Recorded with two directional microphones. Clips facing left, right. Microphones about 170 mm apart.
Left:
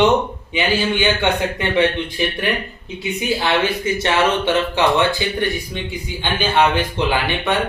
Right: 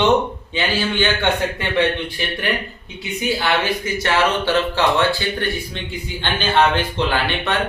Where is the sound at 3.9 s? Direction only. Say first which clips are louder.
Left 1 dB; 25° left (ahead or behind).